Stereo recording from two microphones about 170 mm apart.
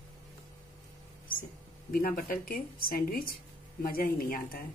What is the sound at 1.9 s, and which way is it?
Speech, 60° left (ahead or behind).